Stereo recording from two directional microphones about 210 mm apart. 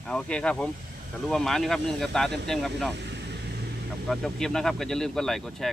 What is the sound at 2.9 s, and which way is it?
Vehicle, 55° right (ahead or behind).